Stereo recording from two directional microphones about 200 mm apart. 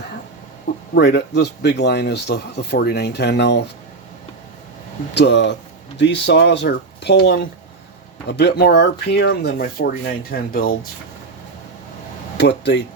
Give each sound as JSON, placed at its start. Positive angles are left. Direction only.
{"t": 0.9, "sound": "speech", "side_deg": 60}
{"t": 5.1, "sound": "speech", "side_deg": 60}
{"t": 12.4, "sound": "speech", "side_deg": 60}